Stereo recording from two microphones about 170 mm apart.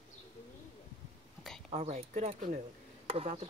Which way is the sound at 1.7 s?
40° right (ahead or behind).